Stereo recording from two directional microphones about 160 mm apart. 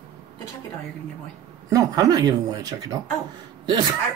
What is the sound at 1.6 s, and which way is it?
Speech, 20° right (ahead or behind).